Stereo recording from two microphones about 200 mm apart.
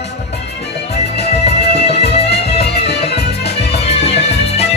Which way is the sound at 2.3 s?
55° left (ahead or behind).